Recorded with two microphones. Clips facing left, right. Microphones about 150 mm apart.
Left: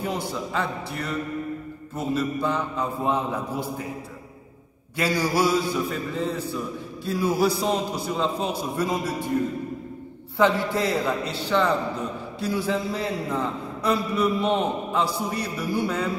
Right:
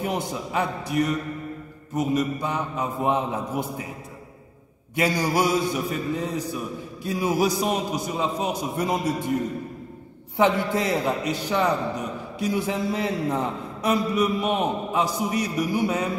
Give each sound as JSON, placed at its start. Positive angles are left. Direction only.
{"t": 0.0, "sound": "a man's voice", "side_deg": -20}
{"t": 4.9, "sound": "a man's voice", "side_deg": -20}
{"t": 10.3, "sound": "a man's voice", "side_deg": -20}